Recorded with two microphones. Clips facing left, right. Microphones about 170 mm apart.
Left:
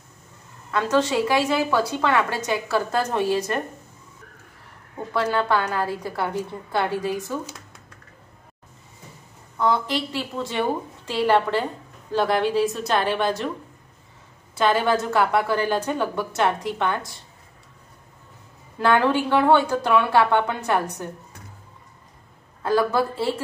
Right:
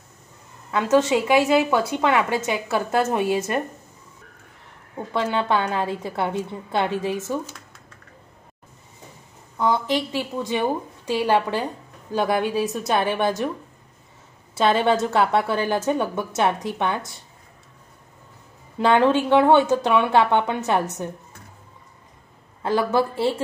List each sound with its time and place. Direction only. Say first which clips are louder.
0.7 s a woman's voice: right 3 dB; 20° right (ahead or behind)
5.1 s a woman's voice: even; 20° right (ahead or behind)
9.6 s a woman's voice: right 1 dB; 20° right (ahead or behind)
14.6 s a woman's voice: right 1 dB; 25° right (ahead or behind)
18.8 s a woman's voice: right 2 dB; 20° right (ahead or behind)
22.6 s a woman's voice: even; 25° right (ahead or behind)